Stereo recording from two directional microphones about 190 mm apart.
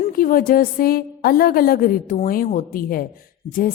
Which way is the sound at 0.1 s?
50° left (ahead or behind).